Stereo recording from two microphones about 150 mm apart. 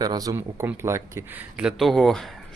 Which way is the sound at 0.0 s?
25° right (ahead or behind).